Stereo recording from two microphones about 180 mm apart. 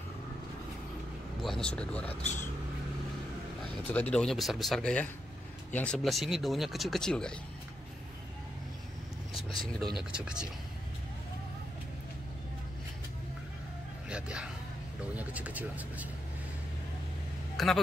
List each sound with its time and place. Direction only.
1.4 s speech: 5° left (ahead or behind)
3.9 s speech: 5° left (ahead or behind)
9.3 s speech: 30° left (ahead or behind)
10.1 s speech: 5° right (ahead or behind)
14.0 s a sound: 5° right (ahead or behind)
15.1 s speech: 10° right (ahead or behind)
17.6 s speech: centre (ahead or behind)